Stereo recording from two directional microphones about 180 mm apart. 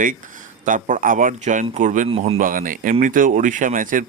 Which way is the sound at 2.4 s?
50° right (ahead or behind).